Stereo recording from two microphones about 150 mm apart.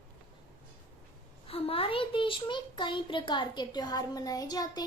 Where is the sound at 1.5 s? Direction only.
40° left (ahead or behind).